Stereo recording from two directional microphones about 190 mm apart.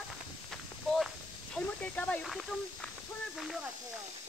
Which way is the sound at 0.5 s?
Centre (ahead or behind).